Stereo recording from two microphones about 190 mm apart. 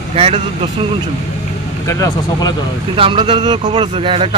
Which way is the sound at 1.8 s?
15° left (ahead or behind).